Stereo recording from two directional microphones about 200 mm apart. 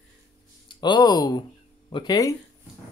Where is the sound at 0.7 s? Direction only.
20° left (ahead or behind).